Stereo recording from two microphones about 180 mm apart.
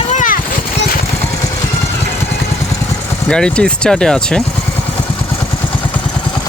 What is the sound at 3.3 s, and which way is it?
Speech, 5° left (ahead or behind).